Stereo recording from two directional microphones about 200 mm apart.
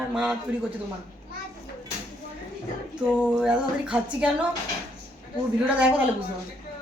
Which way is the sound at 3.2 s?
5° right (ahead or behind).